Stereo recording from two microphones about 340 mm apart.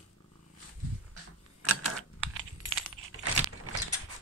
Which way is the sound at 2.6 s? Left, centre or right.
Right.